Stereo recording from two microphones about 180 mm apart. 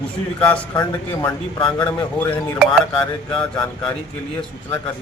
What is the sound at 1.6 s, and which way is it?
A man's voice, 25° left (ahead or behind).